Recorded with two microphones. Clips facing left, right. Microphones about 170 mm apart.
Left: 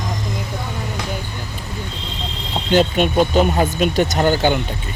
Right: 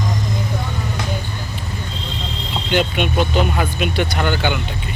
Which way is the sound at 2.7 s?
40° left (ahead or behind).